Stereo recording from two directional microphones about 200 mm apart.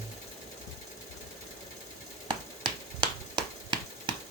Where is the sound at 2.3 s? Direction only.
20° right (ahead or behind).